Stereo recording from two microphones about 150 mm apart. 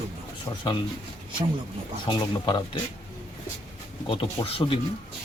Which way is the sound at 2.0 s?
30° left (ahead or behind).